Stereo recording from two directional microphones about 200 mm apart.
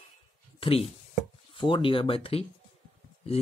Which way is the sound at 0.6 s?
30° left (ahead or behind).